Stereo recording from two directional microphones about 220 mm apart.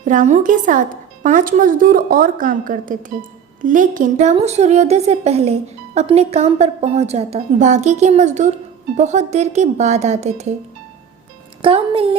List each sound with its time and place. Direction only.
0.0 s speech: 35° right (ahead or behind)
11.6 s a woman's voice: 25° right (ahead or behind)